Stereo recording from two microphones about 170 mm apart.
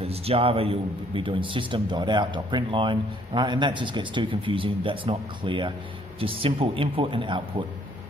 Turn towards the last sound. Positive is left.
turn(degrees=-30)  # may be behind; listen again after turning